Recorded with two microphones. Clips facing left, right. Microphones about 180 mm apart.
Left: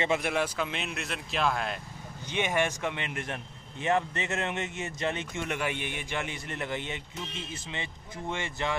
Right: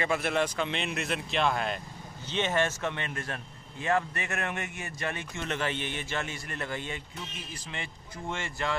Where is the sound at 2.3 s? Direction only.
15° left (ahead or behind).